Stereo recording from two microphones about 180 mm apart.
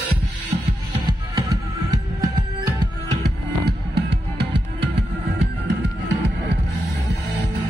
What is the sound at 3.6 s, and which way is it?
Music, 65° right (ahead or behind).